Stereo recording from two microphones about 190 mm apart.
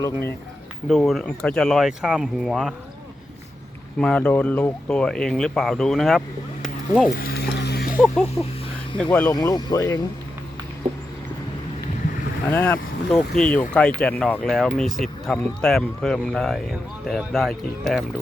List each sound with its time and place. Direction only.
0.9 s speech: centre (ahead or behind)
4.0 s speech: 5° left (ahead or behind)
7.2 s a sound: 55° left (ahead or behind)
7.9 s speech: centre (ahead or behind)
9.3 s speech: 20° left (ahead or behind)
12.5 s speech: 10° left (ahead or behind)